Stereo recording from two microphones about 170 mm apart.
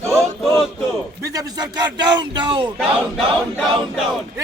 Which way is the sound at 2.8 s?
Centre (ahead or behind).